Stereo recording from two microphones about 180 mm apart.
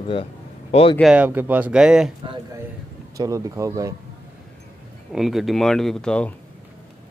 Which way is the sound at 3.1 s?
20° right (ahead or behind).